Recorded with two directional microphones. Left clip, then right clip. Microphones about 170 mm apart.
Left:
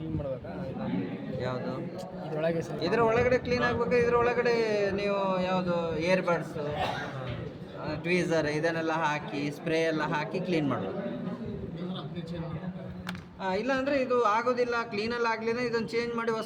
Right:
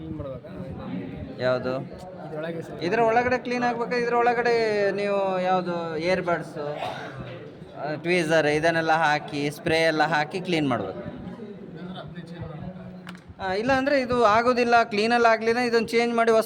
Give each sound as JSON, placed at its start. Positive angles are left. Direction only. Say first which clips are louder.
{"t": 1.4, "sound": "a man's voice", "louder": "right 10 dB", "side_deg": -90}
{"t": 2.3, "sound": "a man's voice", "louder": "left 3 dB", "side_deg": 0}
{"t": 2.8, "sound": "a man's voice", "louder": "right 4 dB", "side_deg": -75}
{"t": 7.9, "sound": "a man's voice", "louder": "right 5 dB", "side_deg": -85}
{"t": 13.4, "sound": "a man's voice", "louder": "right 6 dB", "side_deg": -90}